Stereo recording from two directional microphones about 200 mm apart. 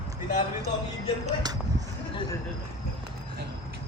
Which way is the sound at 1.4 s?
20° right (ahead or behind).